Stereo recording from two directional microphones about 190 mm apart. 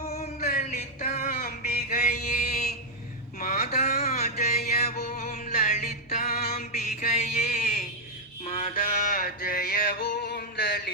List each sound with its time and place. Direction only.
0.1 s male singing: 35° left (ahead or behind)
1.9 s mantra: 40° left (ahead or behind)
4.9 s music: 50° left (ahead or behind)
5.7 s mantra: 35° left (ahead or behind)
7.4 s a sound: 50° left (ahead or behind)
8.4 s music: 30° left (ahead or behind)
9.0 s a sound: 50° left (ahead or behind)
10.1 s music: 60° left (ahead or behind)